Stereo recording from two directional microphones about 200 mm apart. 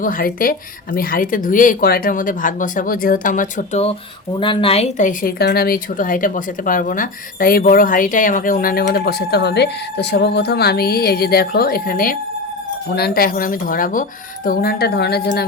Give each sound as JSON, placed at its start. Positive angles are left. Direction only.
{"t": 0.0, "sound": "a woman's voice", "side_deg": 45}